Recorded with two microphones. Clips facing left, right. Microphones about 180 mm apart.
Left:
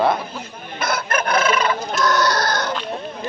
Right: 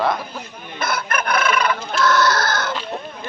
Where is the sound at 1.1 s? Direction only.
25° left (ahead or behind).